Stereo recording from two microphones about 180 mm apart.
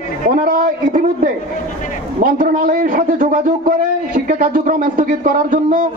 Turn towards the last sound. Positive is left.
turn(degrees=-50)  # may be behind; listen again after turning